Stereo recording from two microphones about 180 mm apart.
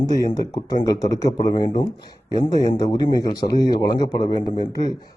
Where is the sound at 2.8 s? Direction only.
20° left (ahead or behind).